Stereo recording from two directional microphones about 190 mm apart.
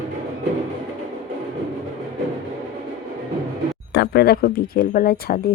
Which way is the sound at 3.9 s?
55° left (ahead or behind).